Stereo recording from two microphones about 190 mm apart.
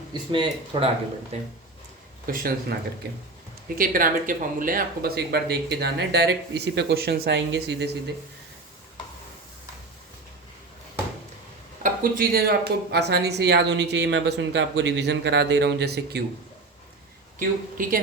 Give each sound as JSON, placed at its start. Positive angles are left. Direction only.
{"t": 0.1, "sound": "speech", "side_deg": -25}
{"t": 2.2, "sound": "speech", "side_deg": -50}
{"t": 3.8, "sound": "speech", "side_deg": -50}
{"t": 11.8, "sound": "speech", "side_deg": -50}
{"t": 17.8, "sound": "speech", "side_deg": -45}